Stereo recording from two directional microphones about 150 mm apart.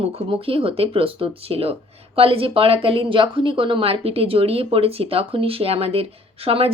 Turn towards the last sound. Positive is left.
turn(degrees=-40)  # may be behind; listen again after turning